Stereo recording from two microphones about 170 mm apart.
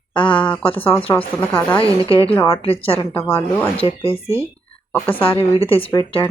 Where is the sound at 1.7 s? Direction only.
35° left (ahead or behind).